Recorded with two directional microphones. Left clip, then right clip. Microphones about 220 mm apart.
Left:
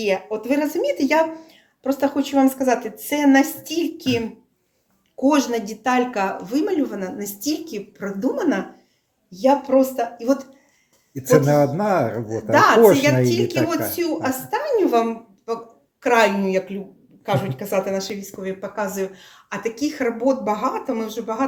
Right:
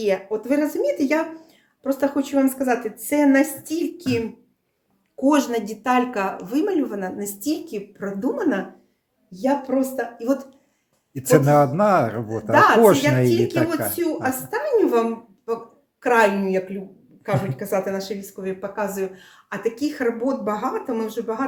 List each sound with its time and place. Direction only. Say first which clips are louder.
0.0 s speech: even; 10° right (ahead or behind)
5.2 s speech: left 1 dB; 15° right (ahead or behind)